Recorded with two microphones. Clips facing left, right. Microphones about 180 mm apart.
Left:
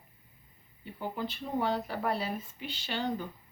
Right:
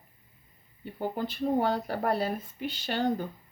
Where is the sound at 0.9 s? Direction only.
45° right (ahead or behind).